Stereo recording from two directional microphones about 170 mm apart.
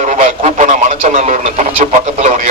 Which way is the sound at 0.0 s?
45° right (ahead or behind).